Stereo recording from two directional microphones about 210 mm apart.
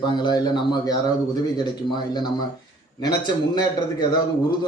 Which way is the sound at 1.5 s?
20° left (ahead or behind).